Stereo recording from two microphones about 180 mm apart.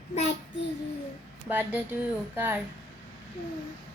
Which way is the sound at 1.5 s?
10° right (ahead or behind).